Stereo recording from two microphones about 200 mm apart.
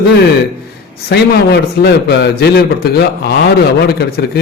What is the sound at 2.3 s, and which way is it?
A man's voice, 55° left (ahead or behind).